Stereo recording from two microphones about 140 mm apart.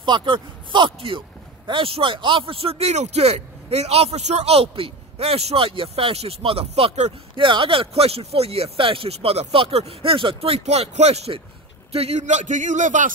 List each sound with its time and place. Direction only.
0.0 s a man's voice: 35° right (ahead or behind); by 13.1 s 65° right (ahead or behind)